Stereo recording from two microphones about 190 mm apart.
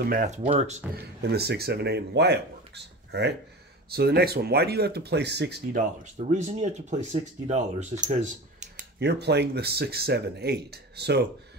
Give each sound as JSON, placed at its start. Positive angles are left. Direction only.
{"t": 0.1, "sound": "speech", "side_deg": -45}
{"t": 0.4, "sound": "speech", "side_deg": -35}
{"t": 1.3, "sound": "speech", "side_deg": -60}
{"t": 6.1, "sound": "speech", "side_deg": -35}
{"t": 9.0, "sound": "speech", "side_deg": -60}